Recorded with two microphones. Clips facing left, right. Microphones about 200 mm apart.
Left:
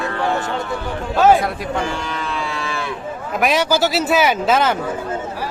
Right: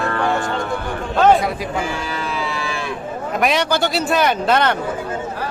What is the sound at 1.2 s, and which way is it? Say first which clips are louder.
Speech: even; 5° left (ahead or behind).